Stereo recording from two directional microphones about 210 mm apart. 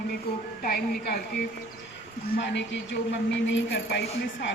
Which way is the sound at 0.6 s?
45° left (ahead or behind).